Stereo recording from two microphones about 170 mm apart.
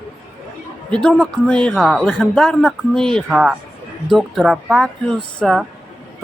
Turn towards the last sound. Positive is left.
turn(degrees=5)  # may be behind; listen again after turning